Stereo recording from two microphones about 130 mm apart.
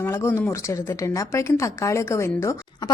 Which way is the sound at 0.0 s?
15° left (ahead or behind).